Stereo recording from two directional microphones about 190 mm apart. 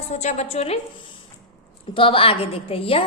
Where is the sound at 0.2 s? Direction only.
35° left (ahead or behind).